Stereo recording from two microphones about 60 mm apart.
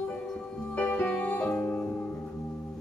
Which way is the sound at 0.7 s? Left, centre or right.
Left.